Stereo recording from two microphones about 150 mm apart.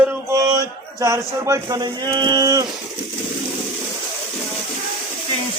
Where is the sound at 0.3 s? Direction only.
25° right (ahead or behind).